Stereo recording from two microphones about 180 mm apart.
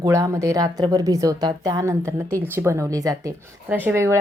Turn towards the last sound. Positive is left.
turn(degrees=-15)  # may be behind; listen again after turning